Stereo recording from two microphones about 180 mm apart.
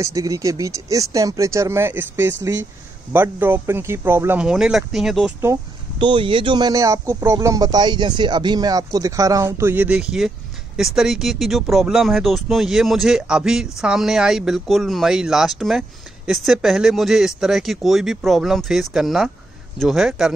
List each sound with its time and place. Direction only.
0.0 s speech: 20° right (ahead or behind); by 5.3 s centre (ahead or behind)
5.9 s speech: 25° right (ahead or behind); by 20.3 s centre (ahead or behind)